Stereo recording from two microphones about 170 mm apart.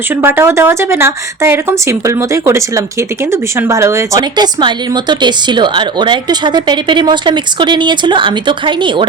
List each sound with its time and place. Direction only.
0.2 s a woman's voice: 15° right (ahead or behind); by 9.0 s 30° right (ahead or behind)